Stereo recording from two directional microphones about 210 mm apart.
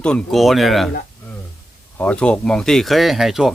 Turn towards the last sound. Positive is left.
turn(degrees=0)  # may be behind; listen again after turning